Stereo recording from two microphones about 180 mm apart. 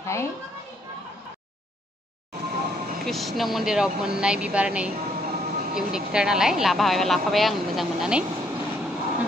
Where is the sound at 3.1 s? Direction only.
Centre (ahead or behind).